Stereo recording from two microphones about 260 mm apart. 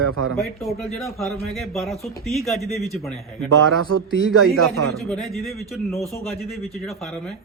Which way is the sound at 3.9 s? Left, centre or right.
Right.